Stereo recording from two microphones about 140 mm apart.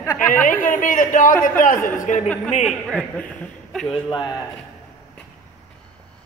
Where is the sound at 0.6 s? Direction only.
70° left (ahead or behind).